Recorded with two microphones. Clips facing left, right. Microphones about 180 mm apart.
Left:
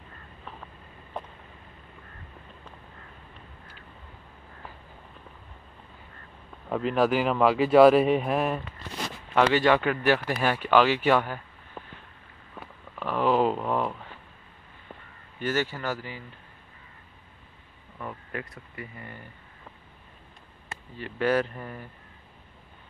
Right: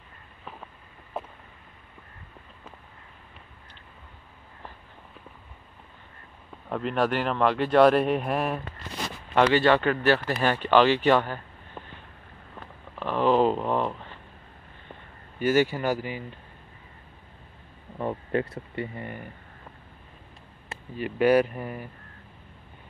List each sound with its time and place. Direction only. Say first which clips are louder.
1.1 s a sound: right 2 dB; 5° right (ahead or behind)
6.7 s speech: left 2 dB; centre (ahead or behind)
11.8 s boat: even; 5° left (ahead or behind)
12.5 s a sound: even; 5° left (ahead or behind)
15.4 s speech: right 6 dB; 15° right (ahead or behind)
17.9 s speech: right 9 dB; 30° right (ahead or behind)
21.0 s speech: right 5 dB; 15° right (ahead or behind)